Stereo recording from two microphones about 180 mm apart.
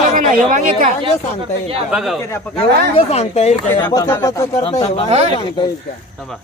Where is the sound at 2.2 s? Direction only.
15° left (ahead or behind).